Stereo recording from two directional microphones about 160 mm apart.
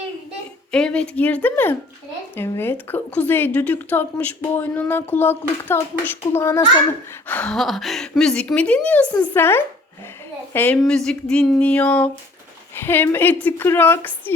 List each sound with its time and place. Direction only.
0.7 s a woman's voice: 5° left (ahead or behind)